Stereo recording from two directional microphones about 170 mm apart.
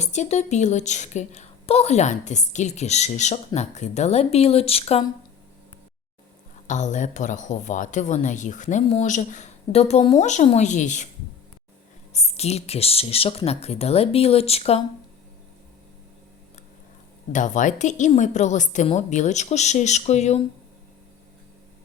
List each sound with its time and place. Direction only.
0.0 s a woman's voice: 45° left (ahead or behind)
6.7 s speech: 45° left (ahead or behind)
12.1 s a woman's voice: 40° left (ahead or behind)
17.3 s speech: 45° left (ahead or behind)